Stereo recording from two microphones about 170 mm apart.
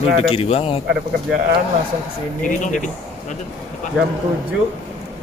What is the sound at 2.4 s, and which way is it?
Speech, 45° left (ahead or behind).